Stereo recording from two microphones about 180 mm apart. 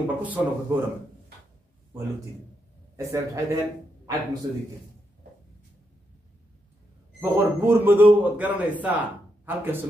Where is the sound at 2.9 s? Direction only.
15° right (ahead or behind).